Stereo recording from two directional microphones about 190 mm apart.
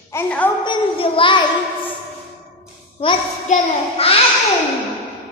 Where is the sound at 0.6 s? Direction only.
25° left (ahead or behind).